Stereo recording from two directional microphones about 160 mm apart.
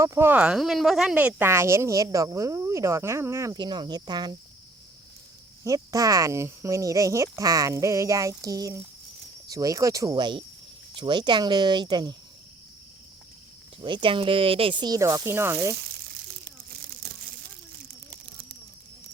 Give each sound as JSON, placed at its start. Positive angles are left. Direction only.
{"t": 0.0, "sound": "speech", "side_deg": -15}
{"t": 5.6, "sound": "speech", "side_deg": -20}
{"t": 13.8, "sound": "speech", "side_deg": -30}
{"t": 17.0, "sound": "crumpling", "side_deg": -90}